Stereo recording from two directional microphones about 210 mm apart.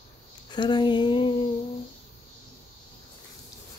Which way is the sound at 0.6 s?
20° left (ahead or behind).